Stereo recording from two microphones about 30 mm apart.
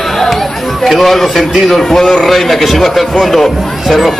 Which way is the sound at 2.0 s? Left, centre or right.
Left.